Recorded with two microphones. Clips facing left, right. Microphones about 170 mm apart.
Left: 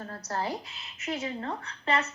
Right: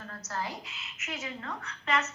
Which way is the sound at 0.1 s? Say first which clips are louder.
Left 4 dB; 35° left (ahead or behind).